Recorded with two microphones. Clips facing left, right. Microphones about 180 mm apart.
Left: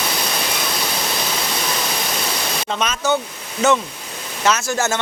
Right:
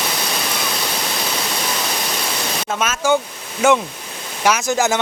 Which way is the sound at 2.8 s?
10° right (ahead or behind).